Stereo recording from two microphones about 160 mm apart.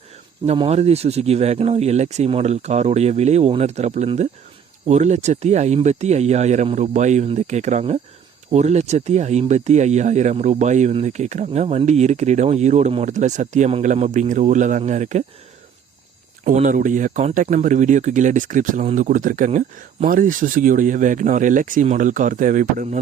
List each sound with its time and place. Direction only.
0.4 s speech: 40° right (ahead or behind)
16.4 s speech: 45° right (ahead or behind)